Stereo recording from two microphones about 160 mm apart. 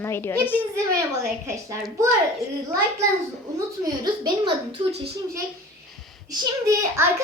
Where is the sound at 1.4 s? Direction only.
20° right (ahead or behind).